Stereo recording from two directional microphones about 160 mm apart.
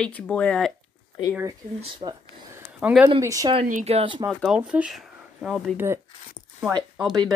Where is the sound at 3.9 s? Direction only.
30° right (ahead or behind).